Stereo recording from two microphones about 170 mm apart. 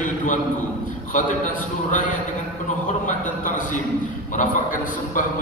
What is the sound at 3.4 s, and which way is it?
Speech, 50° left (ahead or behind).